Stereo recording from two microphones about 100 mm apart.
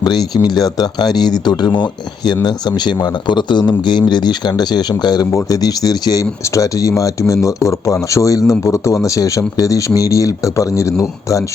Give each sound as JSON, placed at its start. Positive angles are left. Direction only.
{"t": 0.0, "sound": "speech", "side_deg": 45}
{"t": 5.3, "sound": "speech", "side_deg": 35}